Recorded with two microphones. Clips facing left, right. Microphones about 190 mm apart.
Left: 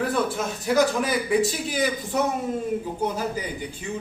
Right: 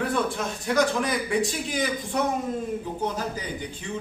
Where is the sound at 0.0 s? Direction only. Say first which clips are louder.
Left 2 dB; 5° left (ahead or behind).